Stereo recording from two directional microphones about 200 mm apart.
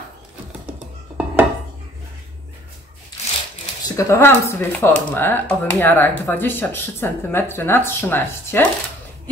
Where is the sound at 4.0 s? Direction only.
15° left (ahead or behind).